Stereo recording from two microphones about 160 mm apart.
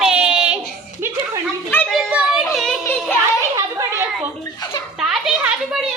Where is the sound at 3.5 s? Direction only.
15° right (ahead or behind).